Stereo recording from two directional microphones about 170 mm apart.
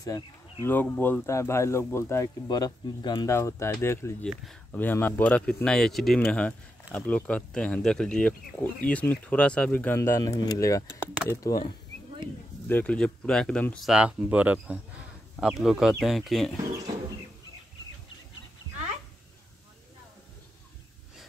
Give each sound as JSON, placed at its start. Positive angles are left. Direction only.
{"t": 0.7, "sound": "speech", "side_deg": 10}
{"t": 12.6, "sound": "speech", "side_deg": 10}